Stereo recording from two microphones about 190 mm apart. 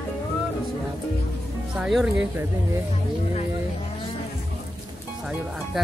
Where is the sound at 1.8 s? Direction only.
5° right (ahead or behind).